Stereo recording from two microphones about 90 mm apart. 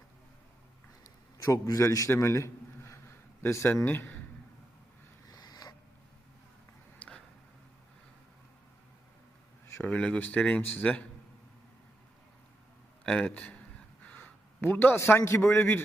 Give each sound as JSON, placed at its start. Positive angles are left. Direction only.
{"t": 1.4, "sound": "a man's voice", "side_deg": 40}
{"t": 5.3, "sound": "mechanisms", "side_deg": 45}
{"t": 9.8, "sound": "speech", "side_deg": 15}
{"t": 13.1, "sound": "a man's voice", "side_deg": 15}
{"t": 14.0, "sound": "a sound", "side_deg": 20}
{"t": 15.4, "sound": "speech", "side_deg": 25}